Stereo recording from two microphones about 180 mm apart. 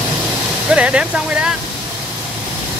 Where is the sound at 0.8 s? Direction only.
5° right (ahead or behind).